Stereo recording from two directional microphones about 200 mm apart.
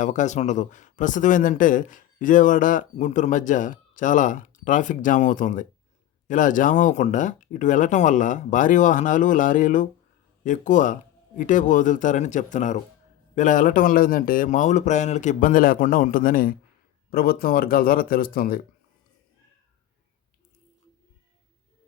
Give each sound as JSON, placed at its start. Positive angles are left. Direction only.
{"t": 0.0, "sound": "speech", "side_deg": 40}